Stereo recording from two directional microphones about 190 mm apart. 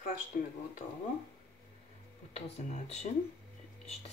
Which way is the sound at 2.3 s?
35° left (ahead or behind).